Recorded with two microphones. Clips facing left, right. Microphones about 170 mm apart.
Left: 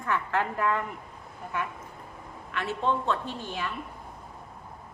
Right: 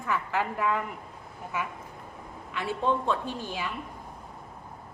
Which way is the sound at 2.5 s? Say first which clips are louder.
Right 1 dB; 15° right (ahead or behind).